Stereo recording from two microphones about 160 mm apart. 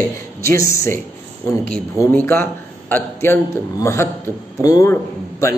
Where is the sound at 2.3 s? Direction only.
10° left (ahead or behind).